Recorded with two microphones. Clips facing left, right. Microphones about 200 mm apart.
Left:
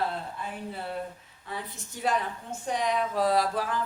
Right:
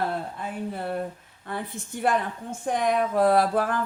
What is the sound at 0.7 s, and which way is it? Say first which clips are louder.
A woman's voice: right 6 dB; 50° right (ahead or behind).